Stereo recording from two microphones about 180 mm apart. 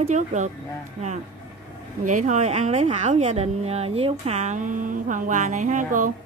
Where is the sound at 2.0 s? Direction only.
45° right (ahead or behind).